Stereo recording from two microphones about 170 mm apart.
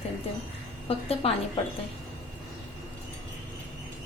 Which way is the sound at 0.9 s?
35° left (ahead or behind).